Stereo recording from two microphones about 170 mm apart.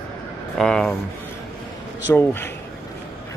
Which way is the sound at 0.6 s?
5° left (ahead or behind).